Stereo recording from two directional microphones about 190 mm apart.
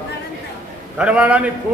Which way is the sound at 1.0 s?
5° right (ahead or behind).